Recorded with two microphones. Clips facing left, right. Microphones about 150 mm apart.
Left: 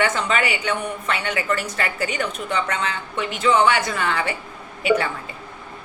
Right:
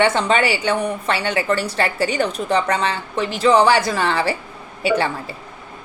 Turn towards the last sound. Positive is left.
turn(degrees=-30)  # may be behind; listen again after turning